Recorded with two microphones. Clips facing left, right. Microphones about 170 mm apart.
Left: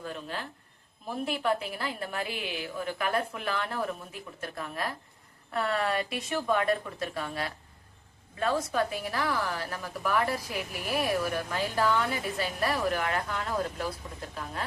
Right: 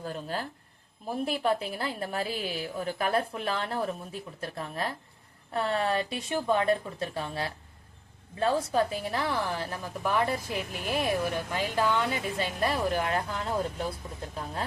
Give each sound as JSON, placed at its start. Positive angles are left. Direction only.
{"t": 0.0, "sound": "a woman's voice", "side_deg": -35}